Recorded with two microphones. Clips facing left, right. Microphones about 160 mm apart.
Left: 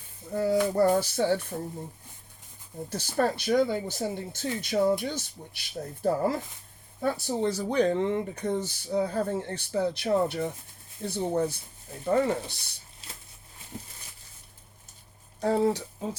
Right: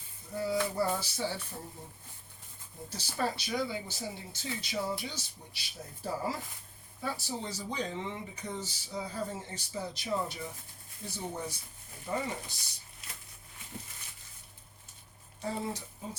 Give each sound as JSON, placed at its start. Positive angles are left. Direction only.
{"t": 0.3, "sound": "speech", "side_deg": 55}
{"t": 2.9, "sound": "speech", "side_deg": 55}
{"t": 13.0, "sound": "a sound", "side_deg": 30}
{"t": 15.4, "sound": "speech", "side_deg": 70}